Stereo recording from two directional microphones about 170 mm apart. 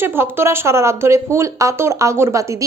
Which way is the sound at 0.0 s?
15° right (ahead or behind).